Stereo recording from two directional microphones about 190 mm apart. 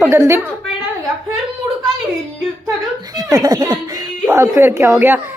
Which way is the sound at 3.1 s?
20° right (ahead or behind).